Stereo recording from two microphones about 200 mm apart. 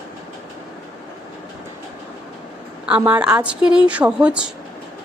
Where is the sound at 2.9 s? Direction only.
10° right (ahead or behind).